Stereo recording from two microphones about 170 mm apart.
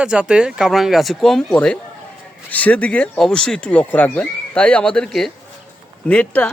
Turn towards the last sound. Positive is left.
turn(degrees=5)  # may be behind; listen again after turning